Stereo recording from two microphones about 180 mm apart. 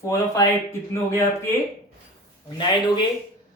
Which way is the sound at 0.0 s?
15° left (ahead or behind).